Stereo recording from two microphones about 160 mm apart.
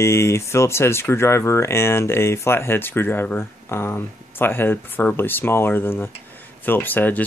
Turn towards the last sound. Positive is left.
turn(degrees=10)  # may be behind; listen again after turning